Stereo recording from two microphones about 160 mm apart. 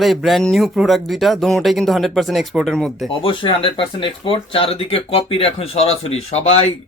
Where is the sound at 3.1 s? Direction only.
35° left (ahead or behind).